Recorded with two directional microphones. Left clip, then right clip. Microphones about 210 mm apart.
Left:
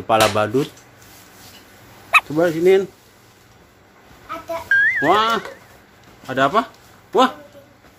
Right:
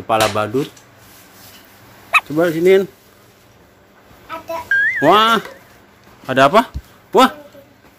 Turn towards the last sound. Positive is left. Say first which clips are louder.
# right 4 dB
turn(degrees=-35)  # may be behind; listen again after turning